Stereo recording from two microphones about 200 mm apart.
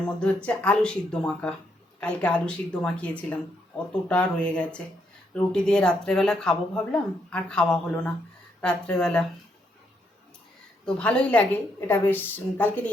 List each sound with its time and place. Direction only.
0.0 s speech: 5° left (ahead or behind)
10.8 s a woman's voice: 5° left (ahead or behind)